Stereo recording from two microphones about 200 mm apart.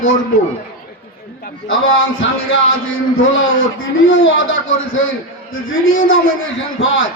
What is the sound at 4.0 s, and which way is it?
A man's voice, 70° left (ahead or behind).